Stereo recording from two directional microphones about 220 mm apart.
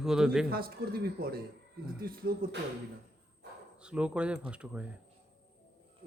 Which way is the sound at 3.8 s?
5° right (ahead or behind).